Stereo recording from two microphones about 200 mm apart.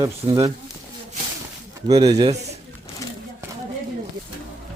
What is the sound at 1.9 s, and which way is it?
Speech, 20° right (ahead or behind).